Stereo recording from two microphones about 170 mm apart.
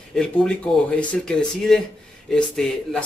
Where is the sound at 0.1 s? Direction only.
5° left (ahead or behind).